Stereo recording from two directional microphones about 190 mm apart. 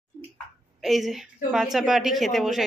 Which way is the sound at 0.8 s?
Centre (ahead or behind).